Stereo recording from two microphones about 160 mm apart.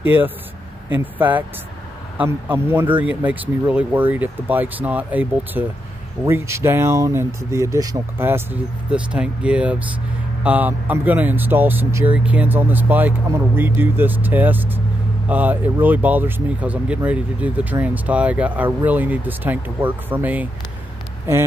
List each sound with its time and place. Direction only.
0.0 s speech: 10° right (ahead or behind)